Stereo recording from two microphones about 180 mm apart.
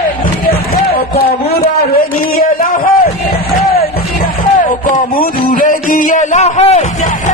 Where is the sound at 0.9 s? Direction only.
60° left (ahead or behind).